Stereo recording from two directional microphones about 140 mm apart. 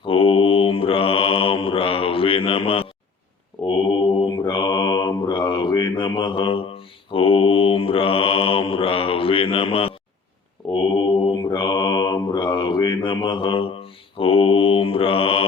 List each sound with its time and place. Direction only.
0.0 s mantra: 40° left (ahead or behind)
10.9 s mantra: 35° left (ahead or behind)